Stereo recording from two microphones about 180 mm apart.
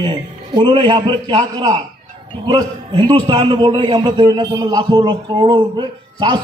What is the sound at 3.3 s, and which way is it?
A man's voice, 30° right (ahead or behind).